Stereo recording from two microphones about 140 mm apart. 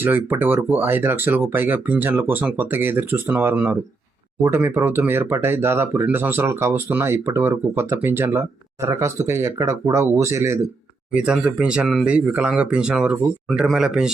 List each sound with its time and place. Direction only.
0.0 s speech: 15° right (ahead or behind)
11.1 s speech: 5° right (ahead or behind)